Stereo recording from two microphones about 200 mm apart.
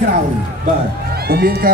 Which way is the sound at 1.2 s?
50° right (ahead or behind).